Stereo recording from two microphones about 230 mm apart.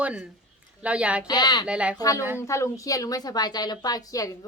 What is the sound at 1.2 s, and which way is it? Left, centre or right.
Speech, centre.